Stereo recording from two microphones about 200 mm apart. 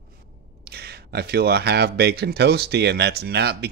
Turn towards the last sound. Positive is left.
turn(degrees=-55)  # may be behind; listen again after turning